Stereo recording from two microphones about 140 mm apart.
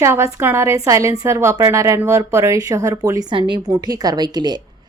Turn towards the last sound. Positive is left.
turn(degrees=-30)  # may be behind; listen again after turning